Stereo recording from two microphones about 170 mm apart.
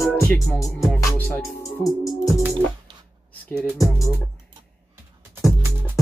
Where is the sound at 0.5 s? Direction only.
20° left (ahead or behind).